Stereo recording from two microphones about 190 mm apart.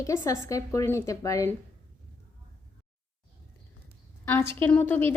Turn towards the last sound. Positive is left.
turn(degrees=10)  # may be behind; listen again after turning